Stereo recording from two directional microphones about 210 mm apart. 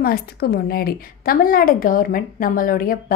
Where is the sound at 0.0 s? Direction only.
45° left (ahead or behind).